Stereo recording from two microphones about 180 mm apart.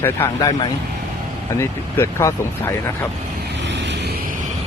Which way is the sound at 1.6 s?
15° left (ahead or behind).